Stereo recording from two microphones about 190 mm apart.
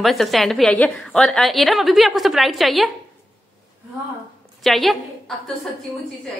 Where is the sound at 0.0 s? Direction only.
Centre (ahead or behind).